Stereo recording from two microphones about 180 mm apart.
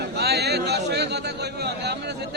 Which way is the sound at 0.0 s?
65° right (ahead or behind).